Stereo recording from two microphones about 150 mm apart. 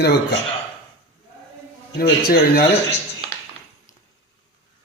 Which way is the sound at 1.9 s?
90° left.